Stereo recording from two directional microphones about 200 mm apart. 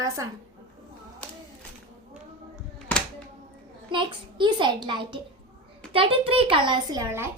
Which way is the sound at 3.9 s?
25° right (ahead or behind).